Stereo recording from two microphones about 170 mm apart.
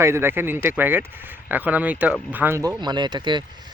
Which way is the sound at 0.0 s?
15° right (ahead or behind).